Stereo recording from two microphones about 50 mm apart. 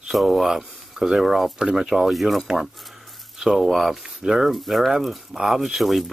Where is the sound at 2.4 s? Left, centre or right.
Centre.